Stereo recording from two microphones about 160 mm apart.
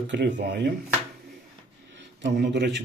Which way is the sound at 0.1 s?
90° right.